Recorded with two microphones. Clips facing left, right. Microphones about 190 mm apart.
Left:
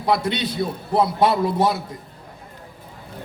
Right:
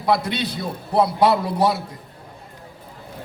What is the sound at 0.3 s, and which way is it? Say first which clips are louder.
A man's voice: left 2 dB; 25° left (ahead or behind).